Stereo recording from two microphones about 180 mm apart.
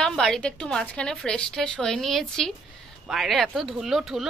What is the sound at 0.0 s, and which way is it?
Speech, 5° left (ahead or behind).